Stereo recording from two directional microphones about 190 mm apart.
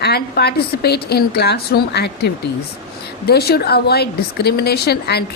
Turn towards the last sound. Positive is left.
turn(degrees=60)  # may be behind; listen again after turning